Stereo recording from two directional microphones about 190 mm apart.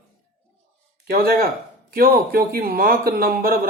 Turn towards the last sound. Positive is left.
turn(degrees=-55)  # may be behind; listen again after turning